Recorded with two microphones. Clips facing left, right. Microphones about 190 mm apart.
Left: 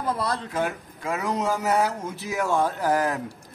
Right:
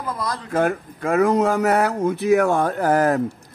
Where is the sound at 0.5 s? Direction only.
55° right (ahead or behind).